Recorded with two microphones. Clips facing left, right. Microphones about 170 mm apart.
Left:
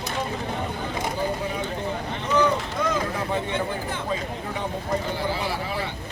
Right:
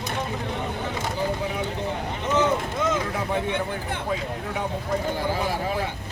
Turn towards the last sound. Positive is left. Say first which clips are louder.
# right 1 dB
turn(degrees=-45)  # may be behind; listen again after turning